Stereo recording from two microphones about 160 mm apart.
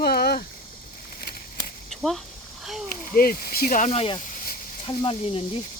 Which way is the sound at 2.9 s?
65° left (ahead or behind).